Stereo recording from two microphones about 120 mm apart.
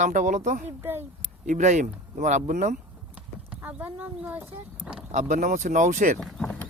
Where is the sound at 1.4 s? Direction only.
85° right.